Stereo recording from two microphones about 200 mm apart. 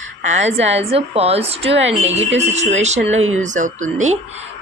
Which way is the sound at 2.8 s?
35° right (ahead or behind).